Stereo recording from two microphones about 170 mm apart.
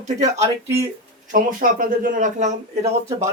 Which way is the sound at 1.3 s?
50° right (ahead or behind).